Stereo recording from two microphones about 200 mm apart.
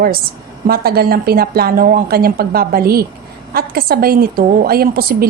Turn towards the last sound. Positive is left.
turn(degrees=-50)  # may be behind; listen again after turning